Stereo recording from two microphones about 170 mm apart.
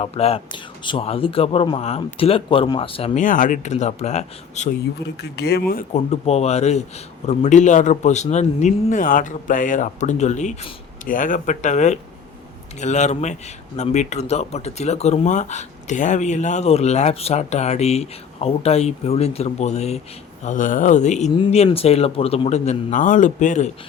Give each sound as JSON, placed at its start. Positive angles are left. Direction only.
{"t": 0.0, "sound": "speech", "side_deg": 35}
{"t": 3.2, "sound": "a man's voice", "side_deg": 50}
{"t": 5.0, "sound": "speech", "side_deg": 80}
{"t": 5.9, "sound": "a man's voice", "side_deg": 40}